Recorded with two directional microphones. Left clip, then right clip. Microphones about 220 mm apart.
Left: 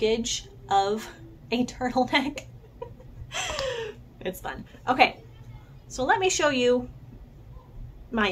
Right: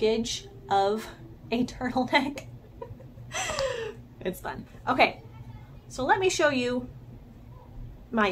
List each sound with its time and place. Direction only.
0.0 s a woman's voice: 5° right (ahead or behind)
3.3 s gasp: 10° right (ahead or behind)
5.9 s a woman's voice: 5° right (ahead or behind)